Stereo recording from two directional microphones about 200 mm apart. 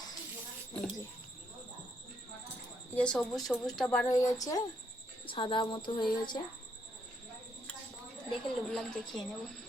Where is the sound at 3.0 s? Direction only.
5° left (ahead or behind).